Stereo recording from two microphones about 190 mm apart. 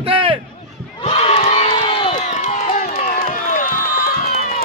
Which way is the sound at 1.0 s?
30° left (ahead or behind).